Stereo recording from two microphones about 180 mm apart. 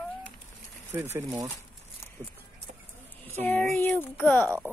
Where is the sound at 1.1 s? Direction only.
20° right (ahead or behind).